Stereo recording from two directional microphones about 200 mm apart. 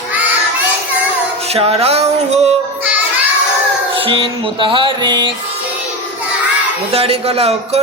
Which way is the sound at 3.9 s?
25° right (ahead or behind).